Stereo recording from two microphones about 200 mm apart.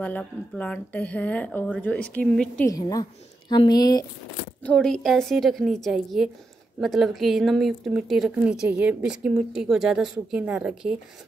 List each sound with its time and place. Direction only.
0.0 s speech: 5° left (ahead or behind)
2.7 s a woman's voice: 20° left (ahead or behind)
4.6 s speech: 5° left (ahead or behind)